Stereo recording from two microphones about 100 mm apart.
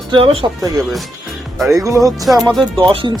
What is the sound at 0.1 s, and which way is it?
Speech, 65° right (ahead or behind).